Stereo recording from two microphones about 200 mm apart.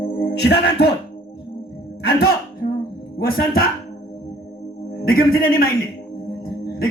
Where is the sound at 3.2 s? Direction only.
50° left (ahead or behind).